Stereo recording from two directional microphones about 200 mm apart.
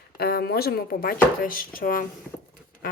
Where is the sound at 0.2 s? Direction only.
50° left (ahead or behind).